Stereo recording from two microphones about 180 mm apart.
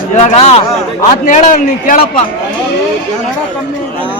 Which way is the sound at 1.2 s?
45° left (ahead or behind).